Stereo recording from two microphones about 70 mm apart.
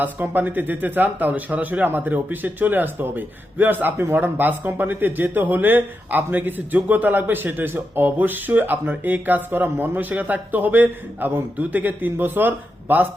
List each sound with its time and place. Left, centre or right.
0.0 s speech: right